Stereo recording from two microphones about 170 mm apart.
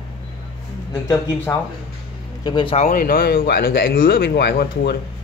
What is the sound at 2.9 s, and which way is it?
Speech, 60° left (ahead or behind).